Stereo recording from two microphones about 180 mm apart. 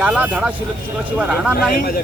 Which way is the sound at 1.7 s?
55° left (ahead or behind).